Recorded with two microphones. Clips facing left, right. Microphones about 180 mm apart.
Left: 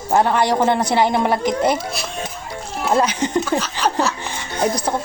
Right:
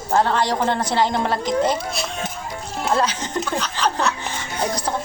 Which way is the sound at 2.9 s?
15° left (ahead or behind).